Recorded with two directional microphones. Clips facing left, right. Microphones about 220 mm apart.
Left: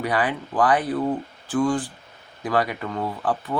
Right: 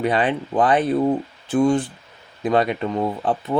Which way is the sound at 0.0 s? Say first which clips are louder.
Right 4 dB; 25° right (ahead or behind).